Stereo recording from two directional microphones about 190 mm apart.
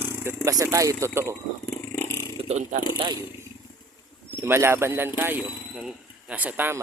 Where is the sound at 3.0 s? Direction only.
20° right (ahead or behind).